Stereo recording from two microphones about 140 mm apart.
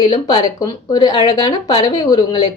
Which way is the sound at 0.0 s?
30° left (ahead or behind).